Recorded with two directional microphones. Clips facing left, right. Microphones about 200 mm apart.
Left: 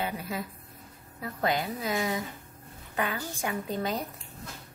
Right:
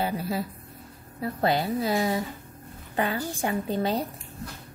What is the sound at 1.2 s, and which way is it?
A woman's voice, 35° right (ahead or behind).